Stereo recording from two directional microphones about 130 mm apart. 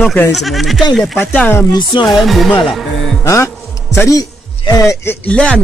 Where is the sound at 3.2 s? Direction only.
20° left (ahead or behind).